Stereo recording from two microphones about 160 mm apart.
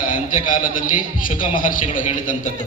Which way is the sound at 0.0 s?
55° left (ahead or behind).